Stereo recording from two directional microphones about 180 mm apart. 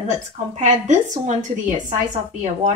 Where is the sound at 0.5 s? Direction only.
40° right (ahead or behind).